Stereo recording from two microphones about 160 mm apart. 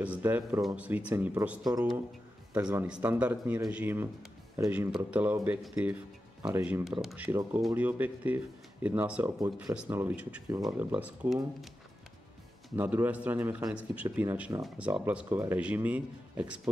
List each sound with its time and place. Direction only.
0.0 s speech: 10° right (ahead or behind)
1.6 s speech: 25° right (ahead or behind)
2.5 s speech: 10° right (ahead or behind)
12.8 s speech: 10° right (ahead or behind)